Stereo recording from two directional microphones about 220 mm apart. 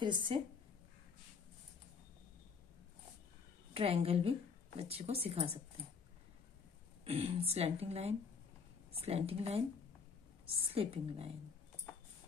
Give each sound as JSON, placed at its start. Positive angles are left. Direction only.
{"t": 0.0, "sound": "speech", "side_deg": -20}
{"t": 3.7, "sound": "speech", "side_deg": -25}
{"t": 7.1, "sound": "speech", "side_deg": -25}